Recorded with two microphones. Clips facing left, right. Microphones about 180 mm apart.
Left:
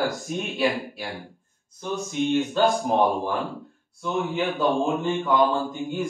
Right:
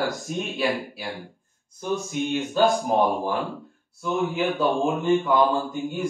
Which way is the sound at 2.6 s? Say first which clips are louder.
Right 3 dB; centre (ahead or behind).